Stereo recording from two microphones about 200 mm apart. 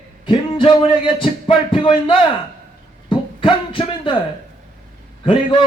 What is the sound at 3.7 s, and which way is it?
Speech, 25° left (ahead or behind).